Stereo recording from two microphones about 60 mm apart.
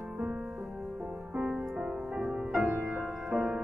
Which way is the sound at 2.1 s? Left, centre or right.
Centre.